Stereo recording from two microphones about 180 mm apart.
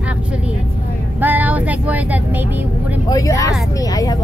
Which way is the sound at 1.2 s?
10° right (ahead or behind).